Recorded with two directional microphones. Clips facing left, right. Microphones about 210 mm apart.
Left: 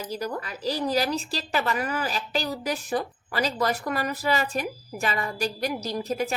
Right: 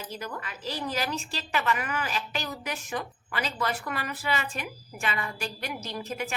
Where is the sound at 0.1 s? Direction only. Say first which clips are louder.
Left 6 dB; 35° left (ahead or behind).